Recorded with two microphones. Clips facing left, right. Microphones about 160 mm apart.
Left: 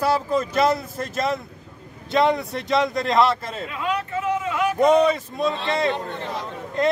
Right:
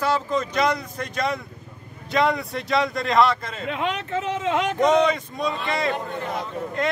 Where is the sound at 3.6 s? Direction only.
90° right.